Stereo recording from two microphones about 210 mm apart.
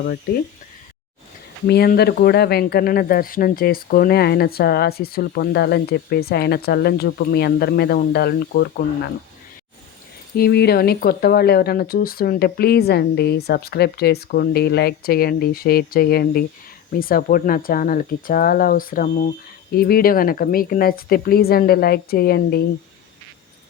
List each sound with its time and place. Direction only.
1.6 s speech: 50° left (ahead or behind)
10.3 s speech: 50° left (ahead or behind)